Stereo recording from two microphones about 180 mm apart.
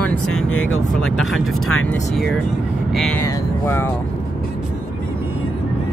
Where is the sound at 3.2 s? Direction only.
15° left (ahead or behind).